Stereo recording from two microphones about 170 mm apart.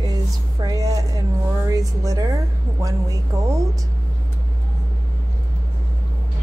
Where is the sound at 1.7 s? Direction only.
20° right (ahead or behind).